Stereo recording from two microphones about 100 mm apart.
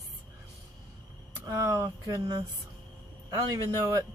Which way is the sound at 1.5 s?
30° right (ahead or behind).